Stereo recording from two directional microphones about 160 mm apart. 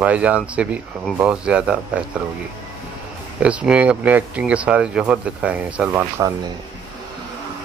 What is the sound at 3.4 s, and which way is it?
Speech, 5° right (ahead or behind).